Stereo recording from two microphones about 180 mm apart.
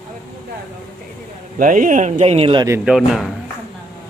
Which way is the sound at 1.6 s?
45° right (ahead or behind).